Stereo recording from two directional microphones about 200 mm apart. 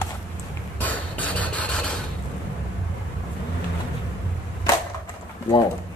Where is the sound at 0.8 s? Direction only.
10° left (ahead or behind).